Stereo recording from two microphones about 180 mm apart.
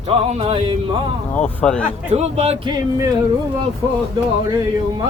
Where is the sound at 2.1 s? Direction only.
40° right (ahead or behind).